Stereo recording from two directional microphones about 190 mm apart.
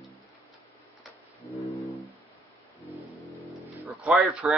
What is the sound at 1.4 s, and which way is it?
Music, 35° left (ahead or behind).